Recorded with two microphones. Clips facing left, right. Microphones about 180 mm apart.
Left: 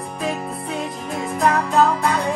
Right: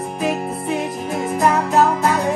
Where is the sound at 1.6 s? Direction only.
5° right (ahead or behind).